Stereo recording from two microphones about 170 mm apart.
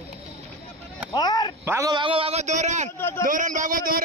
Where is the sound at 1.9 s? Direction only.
30° right (ahead or behind).